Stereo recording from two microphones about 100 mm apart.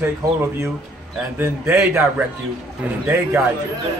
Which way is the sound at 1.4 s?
25° right (ahead or behind).